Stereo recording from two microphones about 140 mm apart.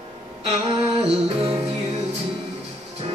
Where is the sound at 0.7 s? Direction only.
40° right (ahead or behind).